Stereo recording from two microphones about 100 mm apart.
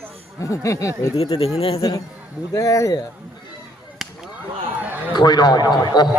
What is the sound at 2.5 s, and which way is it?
Speech, 35° left (ahead or behind).